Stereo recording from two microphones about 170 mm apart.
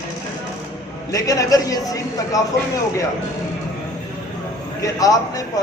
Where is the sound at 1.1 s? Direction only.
20° left (ahead or behind).